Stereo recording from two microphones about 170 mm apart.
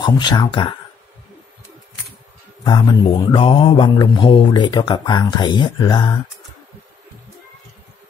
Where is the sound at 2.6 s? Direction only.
25° left (ahead or behind).